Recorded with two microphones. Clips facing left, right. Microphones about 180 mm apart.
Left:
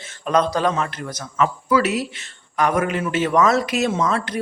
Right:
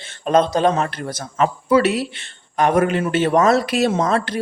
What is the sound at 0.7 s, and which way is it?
Speech, 35° right (ahead or behind).